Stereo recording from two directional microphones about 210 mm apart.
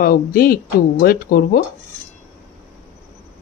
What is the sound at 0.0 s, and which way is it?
Speech, 45° left (ahead or behind).